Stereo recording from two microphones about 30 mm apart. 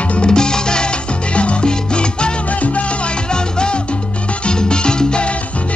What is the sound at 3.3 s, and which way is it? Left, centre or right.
Music, left.